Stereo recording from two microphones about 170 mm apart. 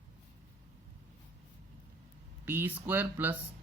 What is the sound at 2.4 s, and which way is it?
Speech, 10° right (ahead or behind).